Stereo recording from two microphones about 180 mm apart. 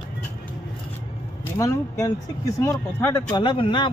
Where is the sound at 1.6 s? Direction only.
15° left (ahead or behind).